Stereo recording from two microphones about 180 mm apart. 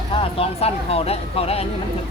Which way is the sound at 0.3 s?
35° left (ahead or behind).